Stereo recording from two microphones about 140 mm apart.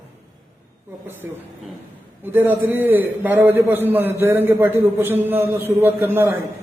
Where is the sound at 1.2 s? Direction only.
15° right (ahead or behind).